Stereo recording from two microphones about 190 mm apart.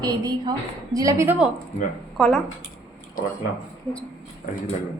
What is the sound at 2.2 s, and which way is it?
Speech, centre (ahead or behind).